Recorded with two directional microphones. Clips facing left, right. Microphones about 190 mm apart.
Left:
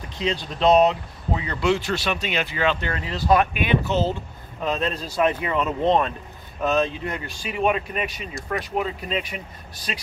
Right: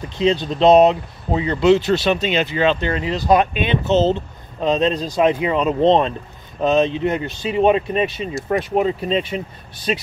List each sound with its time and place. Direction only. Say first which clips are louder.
0.2 s speech: right 7 dB; 25° right (ahead or behind)